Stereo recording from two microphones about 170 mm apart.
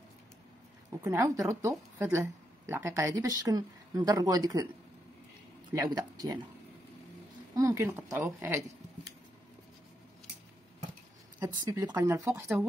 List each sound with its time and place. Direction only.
0.8 s speech: 20° right (ahead or behind)
5.7 s speech: 20° right (ahead or behind)
7.5 s speech: 15° right (ahead or behind)
11.3 s speech: 15° right (ahead or behind)